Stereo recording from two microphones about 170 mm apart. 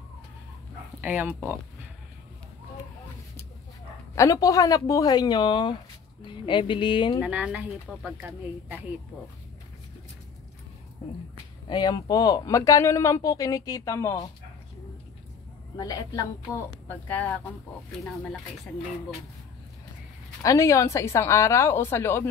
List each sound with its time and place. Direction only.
1.0 s speech: 10° right (ahead or behind)
4.1 s speech: 20° left (ahead or behind)
7.2 s speech: 10° right (ahead or behind)
11.7 s speech: 25° left (ahead or behind)
15.8 s speech: 20° left (ahead or behind)
16.8 s a woman's voice: 10° left (ahead or behind)
20.4 s a woman's voice: 20° left (ahead or behind)